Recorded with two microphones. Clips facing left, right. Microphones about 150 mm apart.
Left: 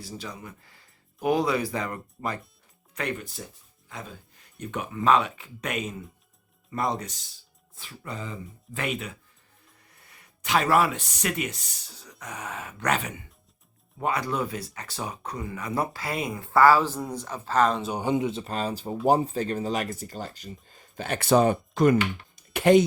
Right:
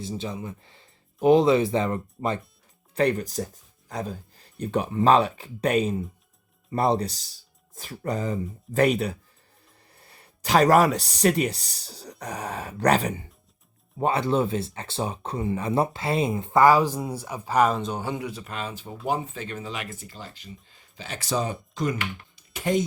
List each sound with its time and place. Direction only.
0.0 s speech: 25° right (ahead or behind)
2.9 s speech: 35° right (ahead or behind); by 17.7 s 10° right (ahead or behind)
17.9 s speech: 20° left (ahead or behind)
18.5 s speech: 35° left (ahead or behind); by 21.9 s 60° left (ahead or behind)
22.5 s speech: 75° left (ahead or behind)